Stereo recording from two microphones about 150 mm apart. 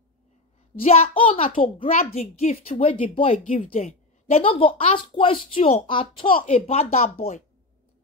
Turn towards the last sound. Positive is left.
turn(degrees=40)  # may be behind; listen again after turning